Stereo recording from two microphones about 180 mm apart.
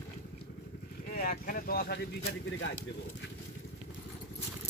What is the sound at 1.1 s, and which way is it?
Speech, 55° left (ahead or behind).